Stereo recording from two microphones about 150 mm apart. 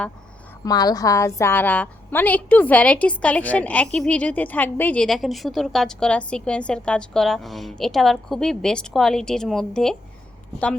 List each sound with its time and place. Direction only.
0.6 s a woman's voice: 25° left (ahead or behind); by 10.0 s 5° left (ahead or behind)